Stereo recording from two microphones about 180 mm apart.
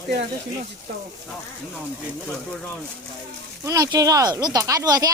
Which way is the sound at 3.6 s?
20° right (ahead or behind).